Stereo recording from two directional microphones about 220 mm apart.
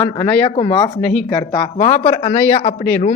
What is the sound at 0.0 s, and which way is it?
Speech, 25° left (ahead or behind).